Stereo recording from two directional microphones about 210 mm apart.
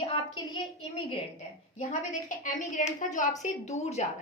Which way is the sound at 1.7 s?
35° left (ahead or behind).